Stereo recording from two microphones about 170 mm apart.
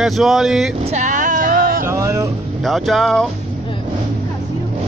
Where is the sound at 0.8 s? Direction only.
45° right (ahead or behind).